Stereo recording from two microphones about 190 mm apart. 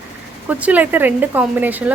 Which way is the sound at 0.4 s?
10° right (ahead or behind).